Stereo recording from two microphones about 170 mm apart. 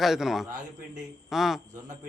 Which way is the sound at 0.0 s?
Centre (ahead or behind).